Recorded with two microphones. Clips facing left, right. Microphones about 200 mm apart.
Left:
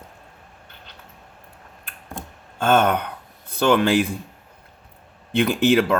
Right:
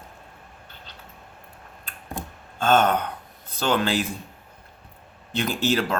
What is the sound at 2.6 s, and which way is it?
Speech, 55° left (ahead or behind).